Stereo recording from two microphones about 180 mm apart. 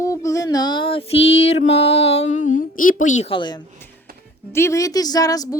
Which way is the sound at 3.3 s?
25° left (ahead or behind).